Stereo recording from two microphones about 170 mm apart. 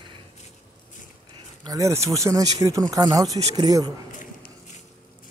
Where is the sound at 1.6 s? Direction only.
20° right (ahead or behind).